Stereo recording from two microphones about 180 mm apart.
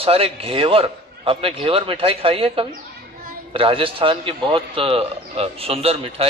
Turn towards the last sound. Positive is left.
turn(degrees=-30)  # may be behind; listen again after turning